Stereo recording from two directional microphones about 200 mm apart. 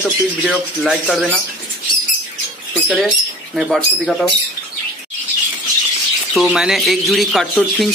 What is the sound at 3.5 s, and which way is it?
Speech, centre (ahead or behind).